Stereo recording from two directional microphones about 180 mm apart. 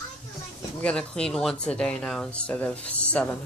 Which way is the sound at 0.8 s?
5° left (ahead or behind).